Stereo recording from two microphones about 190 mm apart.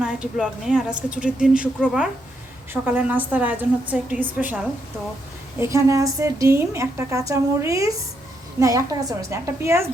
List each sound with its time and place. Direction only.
0.0 s a woman's voice: 5° right (ahead or behind)